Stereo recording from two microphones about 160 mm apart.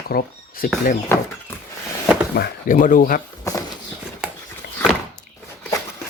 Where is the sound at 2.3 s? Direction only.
70° left (ahead or behind).